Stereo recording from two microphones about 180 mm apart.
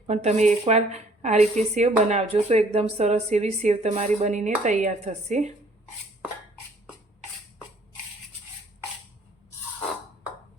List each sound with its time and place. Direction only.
0.1 s a woman's voice: 40° right (ahead or behind)